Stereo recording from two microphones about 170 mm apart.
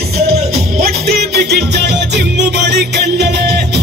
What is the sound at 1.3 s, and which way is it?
Music, 75° right (ahead or behind).